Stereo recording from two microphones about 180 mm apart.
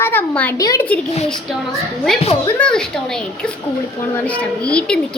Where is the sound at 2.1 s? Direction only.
Centre (ahead or behind).